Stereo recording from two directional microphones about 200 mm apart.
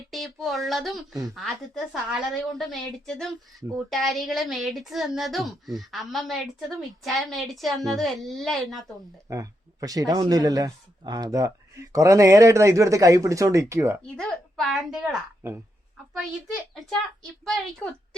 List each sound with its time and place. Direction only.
0.1 s a woman's voice: centre (ahead or behind)
9.3 s speech: 15° right (ahead or behind)
14.2 s a woman's voice: centre (ahead or behind)